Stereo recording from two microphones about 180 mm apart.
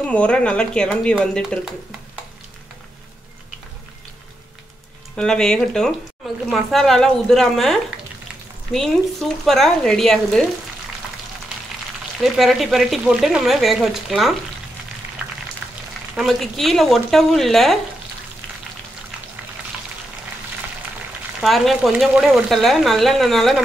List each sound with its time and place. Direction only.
0.0 s speech: 5° left (ahead or behind)
5.1 s speech: 5° left (ahead or behind)
8.7 s speech: centre (ahead or behind)
12.4 s speech: centre (ahead or behind)
15.6 s a sound: centre (ahead or behind)
16.2 s speech: centre (ahead or behind)
21.4 s speech: centre (ahead or behind)